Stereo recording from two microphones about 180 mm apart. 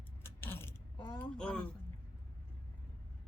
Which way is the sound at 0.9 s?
25° left (ahead or behind).